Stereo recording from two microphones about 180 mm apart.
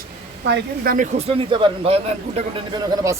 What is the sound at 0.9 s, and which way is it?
A man's voice, 40° right (ahead or behind).